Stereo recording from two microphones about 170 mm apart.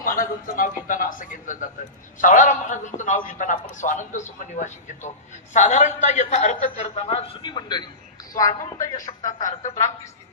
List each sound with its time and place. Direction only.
0.0 s a man's voice: 55° left (ahead or behind); by 8.5 s 20° left (ahead or behind)
9.2 s a man's voice: 45° left (ahead or behind)